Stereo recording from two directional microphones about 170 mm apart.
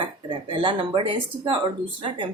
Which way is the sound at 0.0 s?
30° right (ahead or behind).